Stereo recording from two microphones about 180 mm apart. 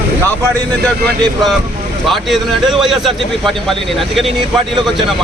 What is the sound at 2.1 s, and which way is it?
A man's voice, centre (ahead or behind).